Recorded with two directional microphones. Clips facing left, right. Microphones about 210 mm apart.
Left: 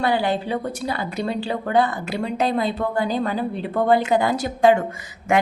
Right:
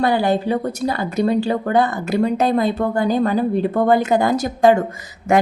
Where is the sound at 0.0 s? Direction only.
45° right (ahead or behind).